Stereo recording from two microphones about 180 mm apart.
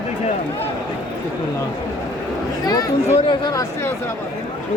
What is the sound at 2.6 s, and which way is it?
Speech, 20° left (ahead or behind).